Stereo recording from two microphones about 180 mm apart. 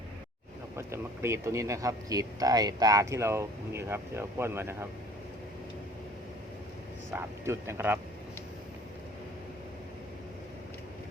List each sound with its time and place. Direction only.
0.8 s speech: 15° right (ahead or behind)
7.1 s speech: 15° right (ahead or behind)